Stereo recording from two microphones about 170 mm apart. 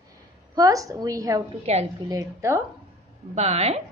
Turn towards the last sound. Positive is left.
turn(degrees=-40)  # may be behind; listen again after turning